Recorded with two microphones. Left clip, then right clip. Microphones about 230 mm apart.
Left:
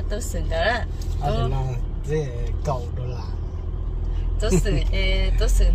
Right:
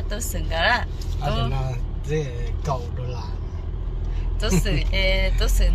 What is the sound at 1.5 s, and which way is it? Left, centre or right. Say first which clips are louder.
Speech: even; left.